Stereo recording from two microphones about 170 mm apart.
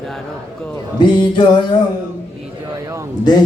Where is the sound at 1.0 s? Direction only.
30° left (ahead or behind).